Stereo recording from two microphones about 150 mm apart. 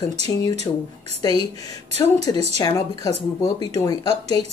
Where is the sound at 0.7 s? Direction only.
30° left (ahead or behind).